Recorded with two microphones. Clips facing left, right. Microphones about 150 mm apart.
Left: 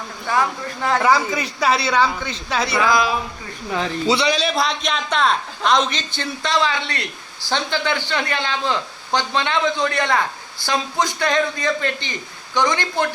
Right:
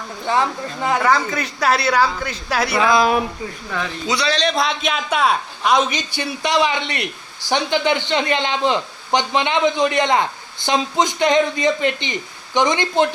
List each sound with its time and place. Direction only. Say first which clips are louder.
0.3 s a man's voice: right 1 dB; 20° right (ahead or behind)
1.0 s speech: even; 5° left (ahead or behind)
2.7 s a man's voice: right 2 dB; 25° right (ahead or behind)
3.8 s speech: left 3 dB; 30° left (ahead or behind)
4.3 s a man's voice: right 1 dB; 5° left (ahead or behind); by 13.1 s 20° right (ahead or behind)